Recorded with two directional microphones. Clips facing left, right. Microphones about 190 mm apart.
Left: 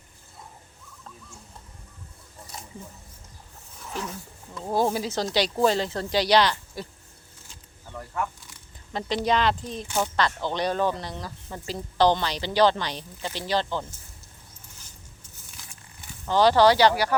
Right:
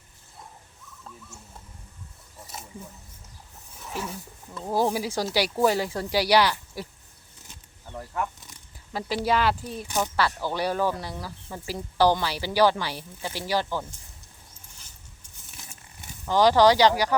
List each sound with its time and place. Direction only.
3.8 s speech: 10° right (ahead or behind)
7.9 s speech: centre (ahead or behind)
15.6 s a sound: 25° right (ahead or behind)
16.2 s speech: 10° right (ahead or behind)